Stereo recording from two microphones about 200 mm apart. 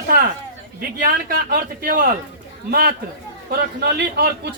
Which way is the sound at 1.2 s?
45° right (ahead or behind).